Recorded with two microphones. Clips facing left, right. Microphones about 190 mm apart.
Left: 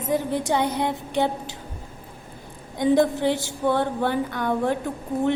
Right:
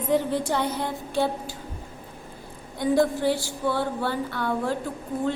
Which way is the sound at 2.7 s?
20° left (ahead or behind).